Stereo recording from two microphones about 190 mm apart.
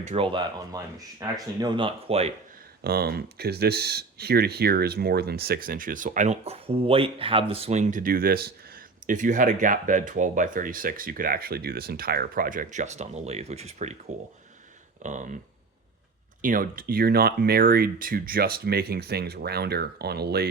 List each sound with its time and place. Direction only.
0.1 s speech: 25° right (ahead or behind)
2.8 s speech: 55° right (ahead or behind); by 13.9 s 35° right (ahead or behind)
15.0 s speech: 40° right (ahead or behind)
16.4 s speech: 45° right (ahead or behind)